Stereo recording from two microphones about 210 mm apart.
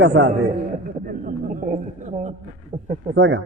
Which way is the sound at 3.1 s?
60° right (ahead or behind).